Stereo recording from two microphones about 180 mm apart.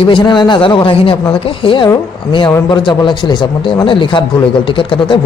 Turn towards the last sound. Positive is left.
turn(degrees=30)  # may be behind; listen again after turning